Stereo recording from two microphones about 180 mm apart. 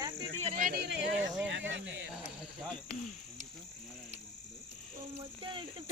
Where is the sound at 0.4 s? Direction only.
50° right (ahead or behind); by 1.2 s 75° right (ahead or behind).